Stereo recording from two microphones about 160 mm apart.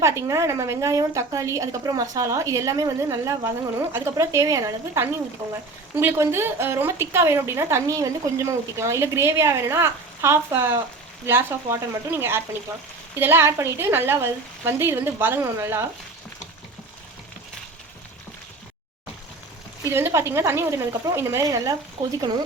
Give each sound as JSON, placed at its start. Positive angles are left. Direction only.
{"t": 0.0, "sound": "a woman's voice", "side_deg": -20}
{"t": 19.8, "sound": "a woman's voice", "side_deg": -15}